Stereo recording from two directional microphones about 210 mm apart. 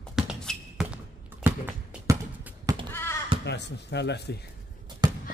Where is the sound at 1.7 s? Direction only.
10° right (ahead or behind).